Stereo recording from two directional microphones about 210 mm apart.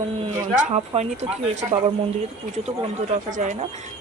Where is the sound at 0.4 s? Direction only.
35° right (ahead or behind).